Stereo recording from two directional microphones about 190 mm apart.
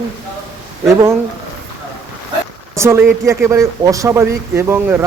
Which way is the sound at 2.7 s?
15° right (ahead or behind).